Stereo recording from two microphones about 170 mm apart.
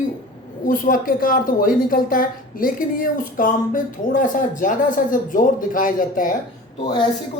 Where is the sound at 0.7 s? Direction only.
55° left (ahead or behind).